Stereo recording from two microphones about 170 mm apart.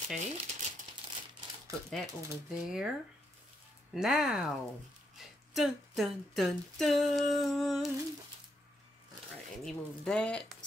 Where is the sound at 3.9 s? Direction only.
5° right (ahead or behind).